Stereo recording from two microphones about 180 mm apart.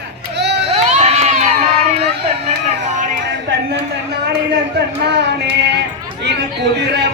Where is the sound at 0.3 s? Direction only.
70° right (ahead or behind).